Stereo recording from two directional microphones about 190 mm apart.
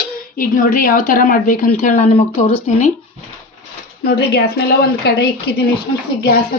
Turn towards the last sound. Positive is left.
turn(degrees=55)  # may be behind; listen again after turning